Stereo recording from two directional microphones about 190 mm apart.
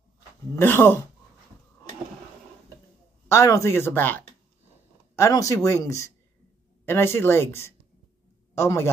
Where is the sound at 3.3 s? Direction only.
15° left (ahead or behind).